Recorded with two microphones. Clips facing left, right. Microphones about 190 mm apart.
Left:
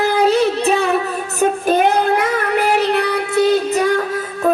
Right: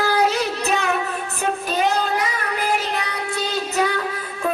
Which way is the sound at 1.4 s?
55° left (ahead or behind).